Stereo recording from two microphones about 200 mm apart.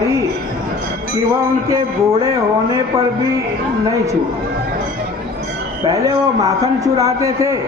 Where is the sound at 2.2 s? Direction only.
15° right (ahead or behind).